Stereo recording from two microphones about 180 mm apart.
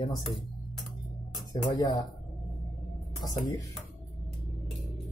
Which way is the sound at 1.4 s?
20° left (ahead or behind).